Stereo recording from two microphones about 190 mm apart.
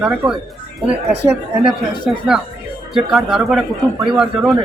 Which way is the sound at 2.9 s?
Centre (ahead or behind).